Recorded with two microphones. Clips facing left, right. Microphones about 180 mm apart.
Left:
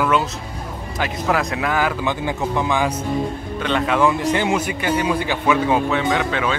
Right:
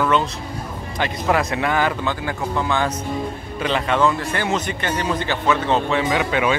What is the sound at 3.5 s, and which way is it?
Speech, centre (ahead or behind).